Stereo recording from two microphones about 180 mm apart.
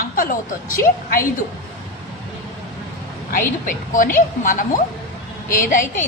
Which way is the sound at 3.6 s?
50° left (ahead or behind).